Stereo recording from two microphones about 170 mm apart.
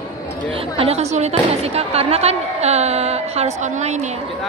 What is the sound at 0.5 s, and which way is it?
Speech, 35° right (ahead or behind).